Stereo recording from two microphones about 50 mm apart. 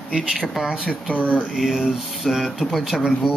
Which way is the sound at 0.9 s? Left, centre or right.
Left.